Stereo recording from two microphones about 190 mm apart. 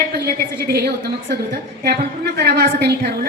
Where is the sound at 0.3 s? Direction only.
55° right (ahead or behind).